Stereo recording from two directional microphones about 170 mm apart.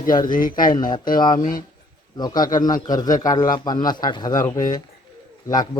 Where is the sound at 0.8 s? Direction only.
25° left (ahead or behind).